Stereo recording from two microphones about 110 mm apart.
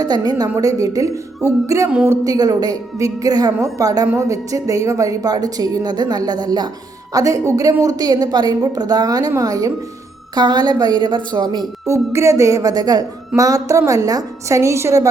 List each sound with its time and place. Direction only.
0.0 s a woman's voice: 35° right (ahead or behind)
11.9 s a woman's voice: 25° right (ahead or behind)